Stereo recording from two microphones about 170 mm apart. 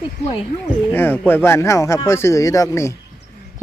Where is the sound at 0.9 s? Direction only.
10° left (ahead or behind).